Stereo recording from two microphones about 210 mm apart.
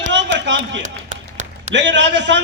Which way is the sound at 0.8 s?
35° right (ahead or behind).